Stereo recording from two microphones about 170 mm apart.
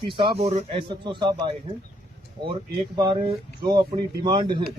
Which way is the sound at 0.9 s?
25° right (ahead or behind).